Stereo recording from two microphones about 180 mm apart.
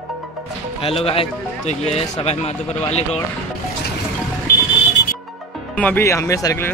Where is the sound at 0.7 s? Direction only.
30° left (ahead or behind).